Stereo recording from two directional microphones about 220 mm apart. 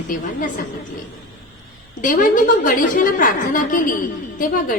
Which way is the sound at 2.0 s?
35° left (ahead or behind).